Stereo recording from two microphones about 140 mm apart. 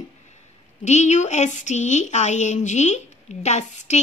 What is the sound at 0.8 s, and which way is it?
A woman's voice, 55° left (ahead or behind).